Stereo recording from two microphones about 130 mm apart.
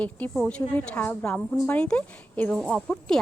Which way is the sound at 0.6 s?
20° left (ahead or behind).